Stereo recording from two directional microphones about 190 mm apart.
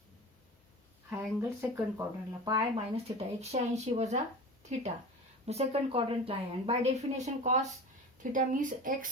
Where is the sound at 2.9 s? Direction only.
35° right (ahead or behind).